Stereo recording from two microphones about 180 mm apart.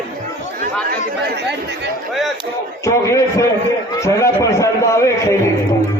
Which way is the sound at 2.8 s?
15° left (ahead or behind).